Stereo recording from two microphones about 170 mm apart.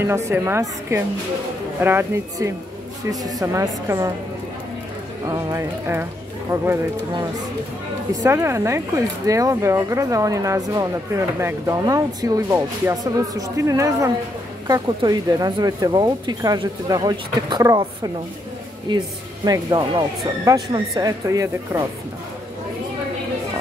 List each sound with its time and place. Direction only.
0.0 s a woman's voice: 15° right (ahead or behind)
5.2 s a woman's voice: 20° right (ahead or behind)
8.1 s speech: 20° right (ahead or behind)